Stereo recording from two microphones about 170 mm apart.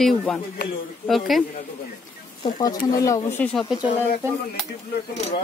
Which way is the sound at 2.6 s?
20° left (ahead or behind).